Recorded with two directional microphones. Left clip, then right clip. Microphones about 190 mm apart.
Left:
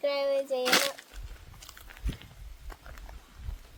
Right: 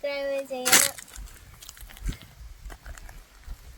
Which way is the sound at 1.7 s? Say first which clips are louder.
Right 1 dB; 45° right (ahead or behind).